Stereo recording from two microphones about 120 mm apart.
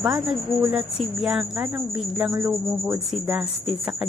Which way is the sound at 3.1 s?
Centre (ahead or behind).